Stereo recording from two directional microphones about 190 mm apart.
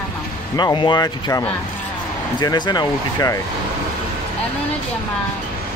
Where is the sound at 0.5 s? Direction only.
25° left (ahead or behind).